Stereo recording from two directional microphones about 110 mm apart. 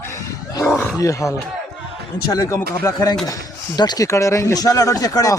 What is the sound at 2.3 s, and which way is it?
Speech, 30° left (ahead or behind).